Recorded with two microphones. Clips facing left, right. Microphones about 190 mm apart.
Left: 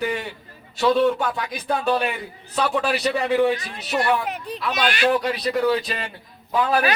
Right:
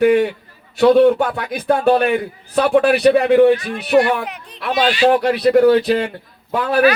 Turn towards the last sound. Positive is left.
turn(degrees=-65)  # may be behind; listen again after turning